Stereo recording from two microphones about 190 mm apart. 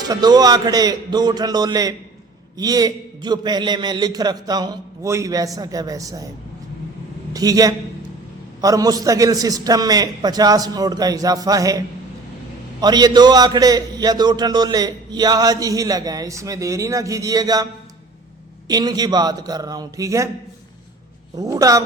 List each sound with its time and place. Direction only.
0.1 s a man's voice: 20° right (ahead or behind)
7.3 s a man's voice: 20° right (ahead or behind)
12.8 s a man's voice: 20° right (ahead or behind)
18.7 s a man's voice: 20° right (ahead or behind)
21.3 s a man's voice: 20° right (ahead or behind)